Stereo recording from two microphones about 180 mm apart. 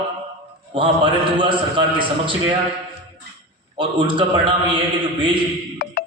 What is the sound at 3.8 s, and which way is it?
A man's voice, 30° right (ahead or behind).